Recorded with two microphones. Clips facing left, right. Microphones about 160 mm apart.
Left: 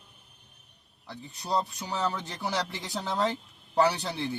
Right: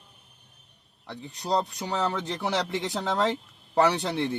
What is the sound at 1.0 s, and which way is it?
Speech, 75° right (ahead or behind).